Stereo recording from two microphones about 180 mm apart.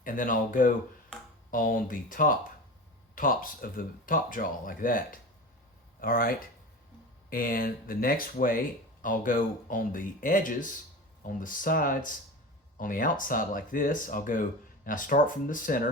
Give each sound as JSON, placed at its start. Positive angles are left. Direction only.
{"t": 0.0, "sound": "speech", "side_deg": 50}